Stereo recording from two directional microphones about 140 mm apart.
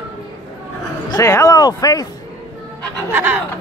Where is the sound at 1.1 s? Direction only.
20° left (ahead or behind).